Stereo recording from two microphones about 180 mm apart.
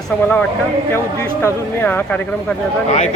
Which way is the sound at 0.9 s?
15° left (ahead or behind).